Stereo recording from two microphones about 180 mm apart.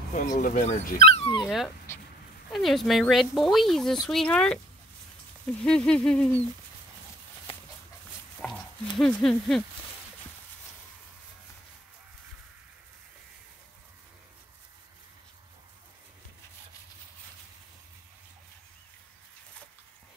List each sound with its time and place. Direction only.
0.1 s speech: 45° left (ahead or behind)
1.4 s speech: centre (ahead or behind)
1.9 s speech: 15° left (ahead or behind)
2.5 s speech: centre (ahead or behind)
5.6 s speech: 5° left (ahead or behind)
7.5 s dog: 30° left (ahead or behind)
8.4 s a sound: 5° left (ahead or behind)
8.9 s speech: 5° left (ahead or behind)